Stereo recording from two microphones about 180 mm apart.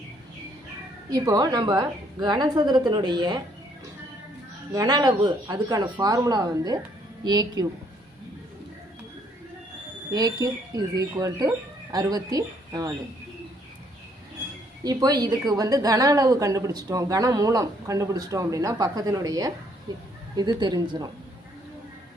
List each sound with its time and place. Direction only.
1.1 s a woman's voice: 20° right (ahead or behind)
4.7 s a woman's voice: 20° right (ahead or behind)
10.1 s a woman's voice: 20° right (ahead or behind)
14.8 s a woman's voice: 20° right (ahead or behind)